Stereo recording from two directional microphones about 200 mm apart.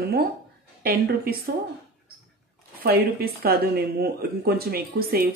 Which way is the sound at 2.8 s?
50° right (ahead or behind).